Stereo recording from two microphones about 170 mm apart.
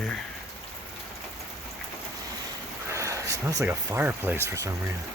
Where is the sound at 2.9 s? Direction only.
15° right (ahead or behind).